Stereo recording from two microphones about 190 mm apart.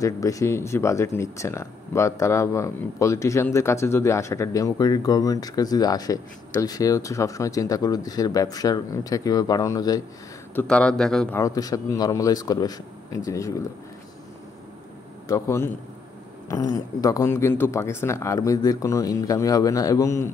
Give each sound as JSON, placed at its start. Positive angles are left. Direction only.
{"t": 0.0, "sound": "speech", "side_deg": 15}
{"t": 10.5, "sound": "speech", "side_deg": 10}
{"t": 11.3, "sound": "speech", "side_deg": 20}
{"t": 15.2, "sound": "speech", "side_deg": 15}